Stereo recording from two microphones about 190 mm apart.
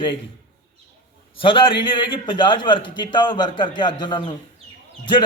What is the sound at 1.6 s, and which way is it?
A man's voice, 25° left (ahead or behind).